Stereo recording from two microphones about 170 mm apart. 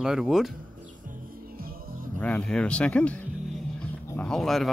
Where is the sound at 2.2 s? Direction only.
5° left (ahead or behind).